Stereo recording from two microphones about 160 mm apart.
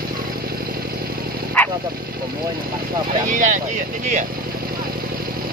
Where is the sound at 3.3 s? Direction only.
50° right (ahead or behind).